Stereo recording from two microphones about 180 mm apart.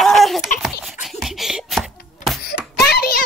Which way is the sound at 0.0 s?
Centre (ahead or behind).